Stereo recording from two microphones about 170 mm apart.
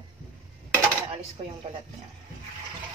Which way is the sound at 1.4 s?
30° right (ahead or behind).